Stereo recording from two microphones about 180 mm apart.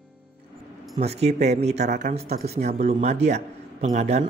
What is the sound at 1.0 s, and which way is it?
Speech, 35° right (ahead or behind).